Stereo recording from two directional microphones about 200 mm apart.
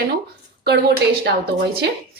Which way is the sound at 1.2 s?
55° right (ahead or behind).